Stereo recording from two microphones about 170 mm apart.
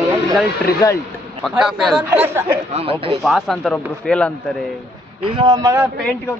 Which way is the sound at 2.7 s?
35° right (ahead or behind).